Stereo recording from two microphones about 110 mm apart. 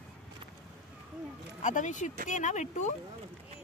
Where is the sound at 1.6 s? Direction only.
90° left.